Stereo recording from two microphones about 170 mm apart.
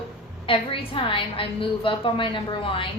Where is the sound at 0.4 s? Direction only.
30° left (ahead or behind).